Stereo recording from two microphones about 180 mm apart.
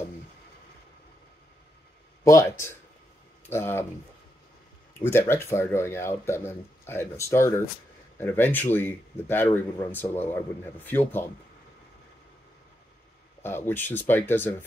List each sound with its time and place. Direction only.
2.2 s speech: 15° left (ahead or behind)
4.9 s speech: 15° left (ahead or behind)
13.4 s speech: 10° left (ahead or behind)